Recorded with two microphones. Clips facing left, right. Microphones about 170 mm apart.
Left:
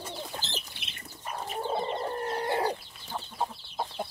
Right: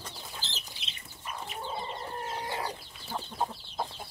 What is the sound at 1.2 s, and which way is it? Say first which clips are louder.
Chicken: left 5 dB; 45° left (ahead or behind).